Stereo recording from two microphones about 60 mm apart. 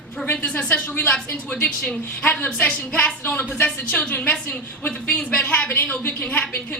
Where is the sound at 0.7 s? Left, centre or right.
Left.